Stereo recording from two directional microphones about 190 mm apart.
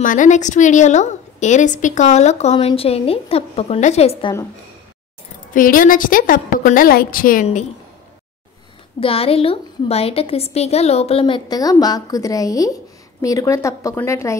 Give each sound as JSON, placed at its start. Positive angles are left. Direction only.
{"t": 0.0, "sound": "a woman's voice", "side_deg": 45}
{"t": 5.5, "sound": "a woman's voice", "side_deg": 45}
{"t": 9.0, "sound": "a woman's voice", "side_deg": 30}